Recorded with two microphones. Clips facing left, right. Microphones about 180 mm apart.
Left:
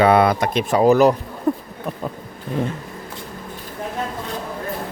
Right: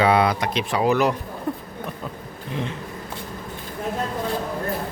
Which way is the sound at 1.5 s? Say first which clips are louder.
Left 8 dB; 45° left (ahead or behind).